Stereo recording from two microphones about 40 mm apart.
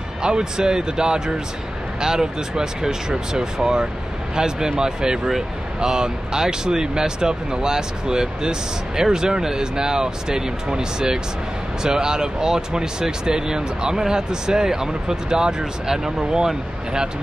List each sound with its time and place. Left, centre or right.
0.2 s speech: centre